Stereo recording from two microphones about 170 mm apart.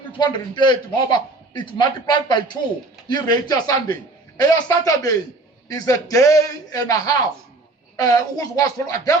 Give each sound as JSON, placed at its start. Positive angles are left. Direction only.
{"t": 0.2, "sound": "a man's voice", "side_deg": 25}